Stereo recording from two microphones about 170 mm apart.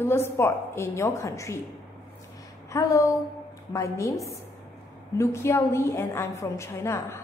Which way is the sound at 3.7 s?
20° left (ahead or behind).